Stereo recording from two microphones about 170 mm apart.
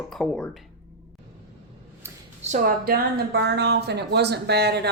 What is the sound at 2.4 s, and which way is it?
Speech, 50° right (ahead or behind).